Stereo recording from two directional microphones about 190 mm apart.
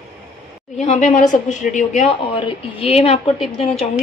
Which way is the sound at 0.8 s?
35° left (ahead or behind).